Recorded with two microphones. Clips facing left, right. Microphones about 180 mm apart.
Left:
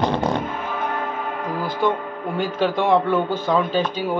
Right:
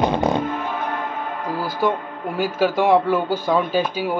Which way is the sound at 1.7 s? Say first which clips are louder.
Even; 5° right (ahead or behind).